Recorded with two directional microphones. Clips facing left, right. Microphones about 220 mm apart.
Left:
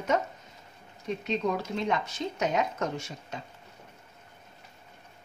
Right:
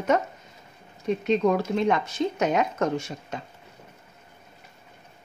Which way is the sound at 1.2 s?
60° right (ahead or behind).